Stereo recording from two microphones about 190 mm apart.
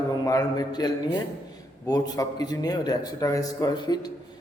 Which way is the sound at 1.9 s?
20° left (ahead or behind).